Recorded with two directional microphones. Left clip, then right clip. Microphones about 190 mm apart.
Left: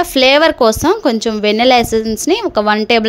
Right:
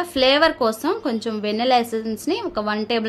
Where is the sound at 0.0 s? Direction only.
45° left (ahead or behind).